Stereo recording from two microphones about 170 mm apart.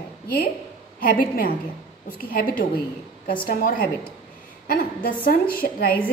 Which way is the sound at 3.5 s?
55° left (ahead or behind).